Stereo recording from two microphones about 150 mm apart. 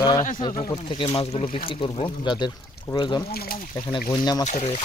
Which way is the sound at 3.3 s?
80° left.